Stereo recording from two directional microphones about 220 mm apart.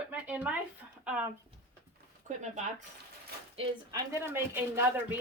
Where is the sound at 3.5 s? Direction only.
25° right (ahead or behind).